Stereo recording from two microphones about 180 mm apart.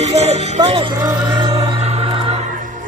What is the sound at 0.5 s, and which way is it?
Speech, 35° right (ahead or behind).